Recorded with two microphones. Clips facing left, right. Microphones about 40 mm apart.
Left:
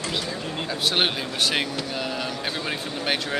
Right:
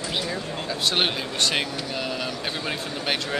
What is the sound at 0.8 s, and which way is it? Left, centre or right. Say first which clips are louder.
Speech: left 1 dB; centre.